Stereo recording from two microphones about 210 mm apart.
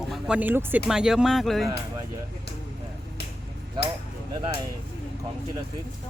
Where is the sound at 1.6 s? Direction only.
15° right (ahead or behind).